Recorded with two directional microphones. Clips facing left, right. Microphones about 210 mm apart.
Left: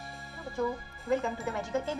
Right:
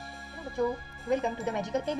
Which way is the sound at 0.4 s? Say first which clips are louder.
Right 3 dB; centre (ahead or behind).